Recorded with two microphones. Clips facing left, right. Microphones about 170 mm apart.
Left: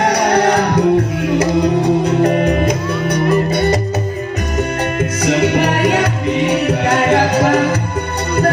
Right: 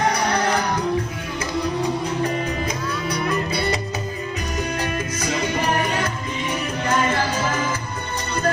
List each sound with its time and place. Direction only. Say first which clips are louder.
0.0 s music: left 8 dB; 70° left (ahead or behind)
3.4 s music: left 8 dB; 45° left (ahead or behind)
5.2 s music: left 10 dB; 70° left (ahead or behind)